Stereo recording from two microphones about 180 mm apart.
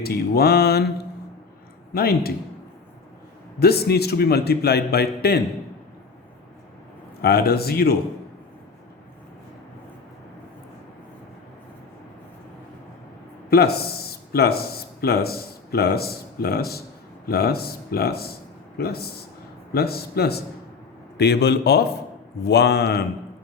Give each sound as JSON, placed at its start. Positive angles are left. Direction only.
{"t": 0.0, "sound": "a man's voice", "side_deg": 60}
{"t": 1.9, "sound": "a man's voice", "side_deg": 60}
{"t": 3.6, "sound": "a man's voice", "side_deg": 60}
{"t": 7.2, "sound": "a man's voice", "side_deg": 60}
{"t": 13.5, "sound": "a man's voice", "side_deg": 60}